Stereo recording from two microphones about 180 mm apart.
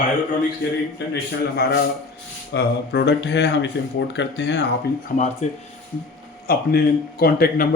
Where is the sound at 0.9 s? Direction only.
65° left (ahead or behind).